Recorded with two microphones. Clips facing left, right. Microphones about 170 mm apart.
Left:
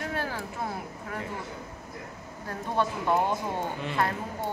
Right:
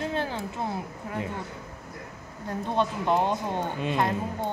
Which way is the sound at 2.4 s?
20° right (ahead or behind).